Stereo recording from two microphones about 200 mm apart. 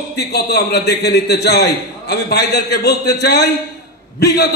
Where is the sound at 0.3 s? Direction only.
55° left (ahead or behind).